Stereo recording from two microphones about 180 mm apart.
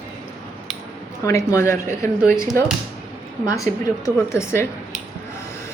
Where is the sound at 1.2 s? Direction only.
15° left (ahead or behind).